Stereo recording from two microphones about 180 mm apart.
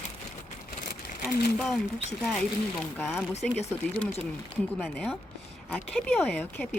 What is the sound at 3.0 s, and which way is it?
Speech, centre (ahead or behind).